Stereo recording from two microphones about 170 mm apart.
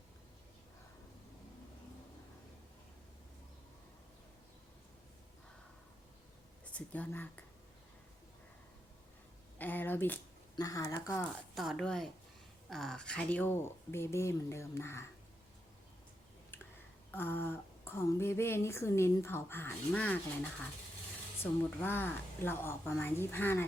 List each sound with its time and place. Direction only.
6.7 s speech: 10° left (ahead or behind)
9.6 s a sound: 10° left (ahead or behind)
10.5 s speech: 20° left (ahead or behind)
11.5 s a woman's voice: centre (ahead or behind); by 15.0 s 15° left (ahead or behind)
17.2 s speech: 10° left (ahead or behind)
21.8 s speech: 10° left (ahead or behind)